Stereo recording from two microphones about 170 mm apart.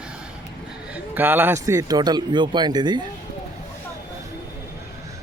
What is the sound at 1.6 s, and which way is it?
Speech, 20° right (ahead or behind).